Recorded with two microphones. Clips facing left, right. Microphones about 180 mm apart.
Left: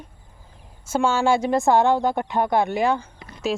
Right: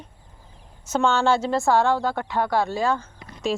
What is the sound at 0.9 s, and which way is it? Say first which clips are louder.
A woman's voice: left 1 dB; 10° left (ahead or behind).